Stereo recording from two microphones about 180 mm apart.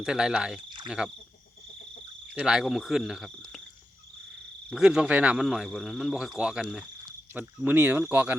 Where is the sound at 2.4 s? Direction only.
5° right (ahead or behind).